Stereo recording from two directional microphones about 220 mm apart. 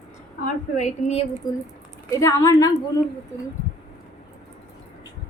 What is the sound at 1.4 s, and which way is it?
A woman's voice, 15° left (ahead or behind).